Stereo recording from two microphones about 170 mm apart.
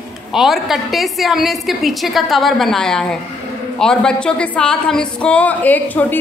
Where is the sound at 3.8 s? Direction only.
5° left (ahead or behind).